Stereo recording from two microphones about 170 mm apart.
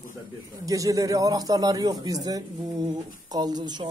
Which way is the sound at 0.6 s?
20° right (ahead or behind).